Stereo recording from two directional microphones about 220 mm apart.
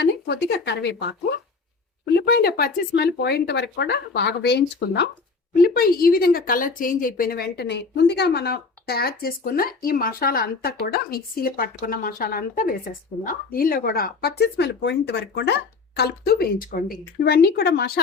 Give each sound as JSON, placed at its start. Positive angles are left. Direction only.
{"t": 0.0, "sound": "a woman's voice", "side_deg": 50}
{"t": 2.1, "sound": "a woman's voice", "side_deg": 45}